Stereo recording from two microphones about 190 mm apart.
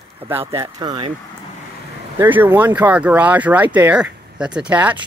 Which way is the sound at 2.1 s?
10° right (ahead or behind).